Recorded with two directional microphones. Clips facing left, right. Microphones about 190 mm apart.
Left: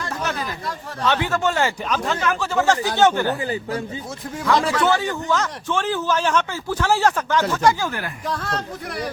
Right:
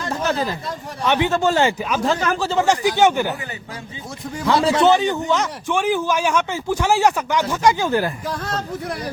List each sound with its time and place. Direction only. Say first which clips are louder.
0.0 s a sound: right 5 dB; 25° right (ahead or behind)
1.0 s a man's voice: right 3 dB; 15° right (ahead or behind)
1.3 s speech: right 3 dB; 30° right (ahead or behind)
2.6 s a man's voice: right 1 dB; 15° right (ahead or behind)
4.4 s a man's voice: right 4 dB; 25° right (ahead or behind)